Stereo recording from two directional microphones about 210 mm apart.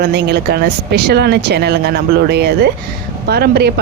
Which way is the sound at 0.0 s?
50° right (ahead or behind).